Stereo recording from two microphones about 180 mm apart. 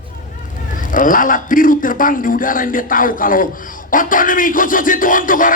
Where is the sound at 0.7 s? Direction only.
50° left (ahead or behind).